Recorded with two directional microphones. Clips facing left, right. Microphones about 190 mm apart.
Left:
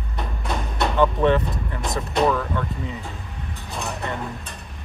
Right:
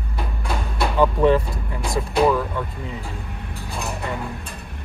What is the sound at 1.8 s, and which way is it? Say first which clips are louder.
Artillery fire: right 2 dB; 5° right (ahead or behind).